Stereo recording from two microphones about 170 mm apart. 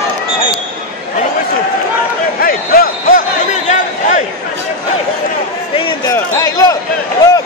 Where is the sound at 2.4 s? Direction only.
60° left (ahead or behind).